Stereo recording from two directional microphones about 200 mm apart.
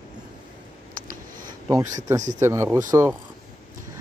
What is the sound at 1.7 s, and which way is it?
Speech, 15° right (ahead or behind).